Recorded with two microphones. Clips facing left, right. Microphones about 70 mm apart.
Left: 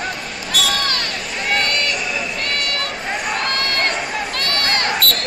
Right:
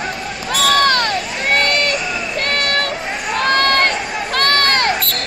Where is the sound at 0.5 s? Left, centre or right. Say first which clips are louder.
Right 8 dB; right.